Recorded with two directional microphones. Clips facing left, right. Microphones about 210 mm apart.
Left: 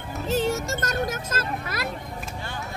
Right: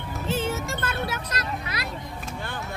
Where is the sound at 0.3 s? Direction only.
40° left (ahead or behind).